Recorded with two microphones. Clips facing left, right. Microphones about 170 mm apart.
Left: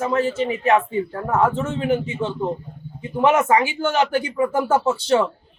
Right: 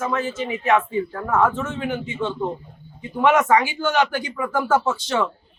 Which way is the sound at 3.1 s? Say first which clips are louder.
Even; 30° left (ahead or behind).